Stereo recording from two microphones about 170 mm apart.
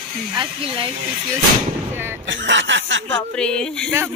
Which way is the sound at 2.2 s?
90° right.